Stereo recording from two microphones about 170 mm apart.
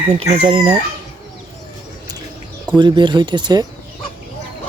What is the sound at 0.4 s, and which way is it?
Speech, 30° right (ahead or behind).